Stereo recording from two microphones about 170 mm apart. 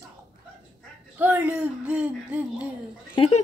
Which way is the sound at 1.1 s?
10° right (ahead or behind).